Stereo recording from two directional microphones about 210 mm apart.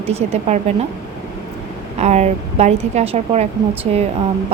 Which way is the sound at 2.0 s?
35° right (ahead or behind).